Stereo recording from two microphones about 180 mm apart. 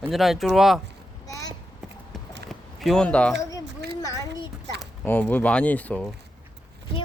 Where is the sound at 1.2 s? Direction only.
20° left (ahead or behind).